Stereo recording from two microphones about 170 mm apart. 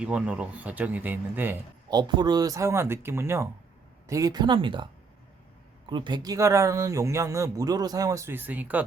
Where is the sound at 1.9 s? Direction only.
25° right (ahead or behind).